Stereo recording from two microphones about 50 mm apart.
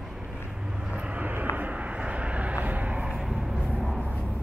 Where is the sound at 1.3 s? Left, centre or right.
Right.